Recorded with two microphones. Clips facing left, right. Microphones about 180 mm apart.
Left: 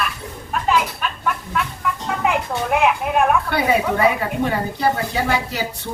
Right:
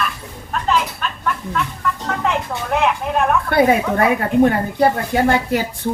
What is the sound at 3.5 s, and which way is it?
Speech, 50° right (ahead or behind).